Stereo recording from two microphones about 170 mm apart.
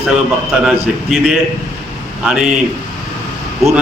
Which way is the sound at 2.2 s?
5° right (ahead or behind).